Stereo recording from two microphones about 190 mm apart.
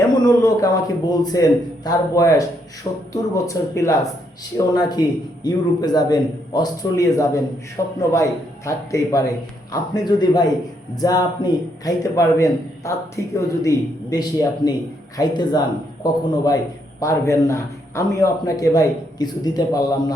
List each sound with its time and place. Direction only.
0.1 s a man's voice: 20° left (ahead or behind)
17.0 s a man's voice: 15° left (ahead or behind)